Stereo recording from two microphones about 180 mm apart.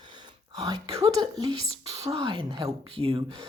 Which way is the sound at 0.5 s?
20° right (ahead or behind).